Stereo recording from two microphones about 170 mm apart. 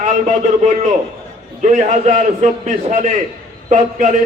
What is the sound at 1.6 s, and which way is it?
A man's voice, 45° right (ahead or behind).